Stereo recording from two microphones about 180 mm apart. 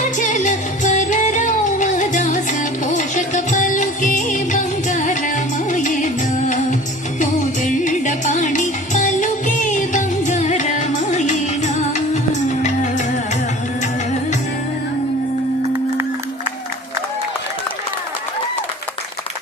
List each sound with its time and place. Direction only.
0.0 s music: 45° left (ahead or behind)